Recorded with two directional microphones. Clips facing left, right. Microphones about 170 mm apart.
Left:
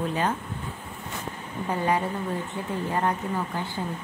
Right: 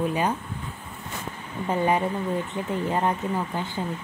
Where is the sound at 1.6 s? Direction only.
20° right (ahead or behind).